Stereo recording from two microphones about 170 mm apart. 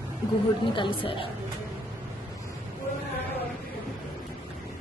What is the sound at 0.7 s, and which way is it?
Speech, 30° left (ahead or behind).